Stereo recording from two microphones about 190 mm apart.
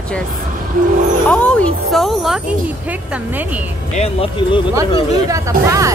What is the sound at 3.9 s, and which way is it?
Speech, 30° left (ahead or behind).